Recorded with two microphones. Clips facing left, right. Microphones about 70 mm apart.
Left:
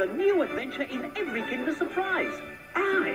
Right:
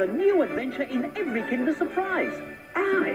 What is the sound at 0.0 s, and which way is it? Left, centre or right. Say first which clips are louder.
Speech: right 3 dB; right.